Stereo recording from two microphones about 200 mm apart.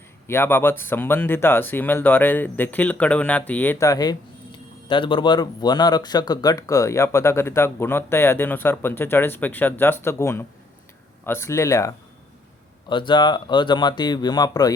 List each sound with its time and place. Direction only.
0.3 s speech: 10° left (ahead or behind)